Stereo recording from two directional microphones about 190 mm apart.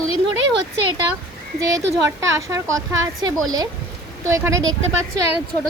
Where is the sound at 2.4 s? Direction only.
15° right (ahead or behind).